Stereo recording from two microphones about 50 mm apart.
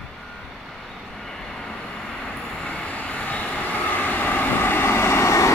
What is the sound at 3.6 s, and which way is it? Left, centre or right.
Vehicle, left.